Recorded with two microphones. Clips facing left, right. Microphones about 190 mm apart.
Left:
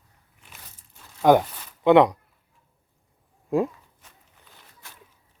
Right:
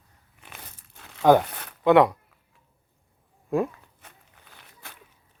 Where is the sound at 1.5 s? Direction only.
65° right (ahead or behind).